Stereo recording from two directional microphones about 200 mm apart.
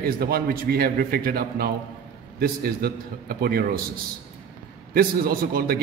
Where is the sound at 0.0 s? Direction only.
50° right (ahead or behind).